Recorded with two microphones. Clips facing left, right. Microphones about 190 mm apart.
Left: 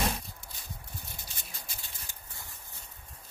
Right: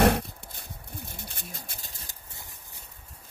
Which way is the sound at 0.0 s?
65° right (ahead or behind).